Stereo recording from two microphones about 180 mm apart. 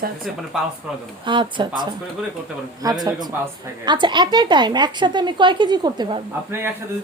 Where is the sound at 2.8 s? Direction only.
20° right (ahead or behind).